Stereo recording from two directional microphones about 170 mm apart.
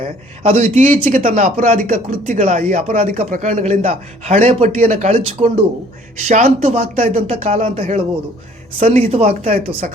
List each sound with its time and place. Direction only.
0.0 s a man's voice: 45° right (ahead or behind)